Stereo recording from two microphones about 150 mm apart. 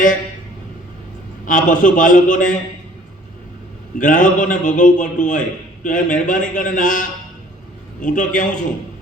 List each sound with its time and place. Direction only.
1.5 s a man's voice: 60° left (ahead or behind)
3.9 s a man's voice: 60° left (ahead or behind)